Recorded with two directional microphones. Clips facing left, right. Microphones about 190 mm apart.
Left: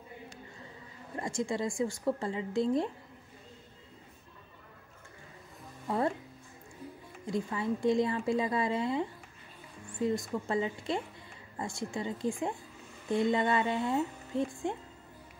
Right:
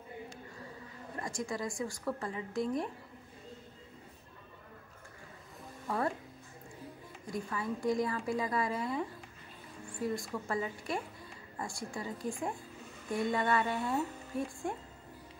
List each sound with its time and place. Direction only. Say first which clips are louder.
1.2 s a woman's voice: left 5 dB; 25° left (ahead or behind)
5.9 s speech: left 3 dB; 25° left (ahead or behind)
7.2 s a woman's voice: left 5 dB; 25° left (ahead or behind)
10.0 s a woman's voice: left 4 dB; 20° left (ahead or behind)